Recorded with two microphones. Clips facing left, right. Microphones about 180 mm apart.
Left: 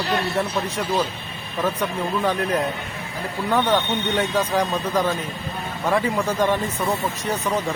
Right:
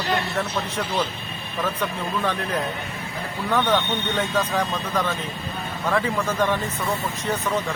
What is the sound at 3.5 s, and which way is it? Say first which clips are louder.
Speech: left 1 dB; 10° left (ahead or behind).